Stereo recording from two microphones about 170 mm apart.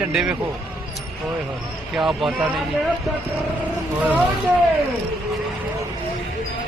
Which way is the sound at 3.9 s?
10° right (ahead or behind).